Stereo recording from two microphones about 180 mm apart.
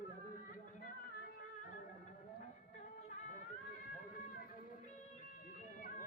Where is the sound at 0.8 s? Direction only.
50° left (ahead or behind).